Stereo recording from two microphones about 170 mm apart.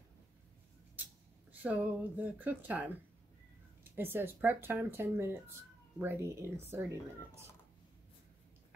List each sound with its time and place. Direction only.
1.6 s speech: 10° right (ahead or behind)